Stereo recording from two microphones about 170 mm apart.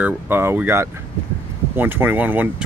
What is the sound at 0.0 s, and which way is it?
Speech, 15° right (ahead or behind).